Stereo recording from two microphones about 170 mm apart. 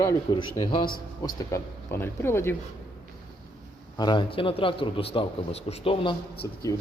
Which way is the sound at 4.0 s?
25° left (ahead or behind).